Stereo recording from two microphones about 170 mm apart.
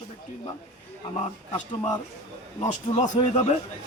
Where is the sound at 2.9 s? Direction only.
45° left (ahead or behind).